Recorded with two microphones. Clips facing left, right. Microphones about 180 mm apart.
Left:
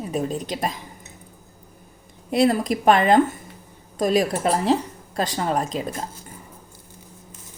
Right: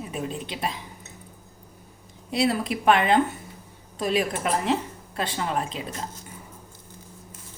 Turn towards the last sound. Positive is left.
turn(degrees=40)  # may be behind; listen again after turning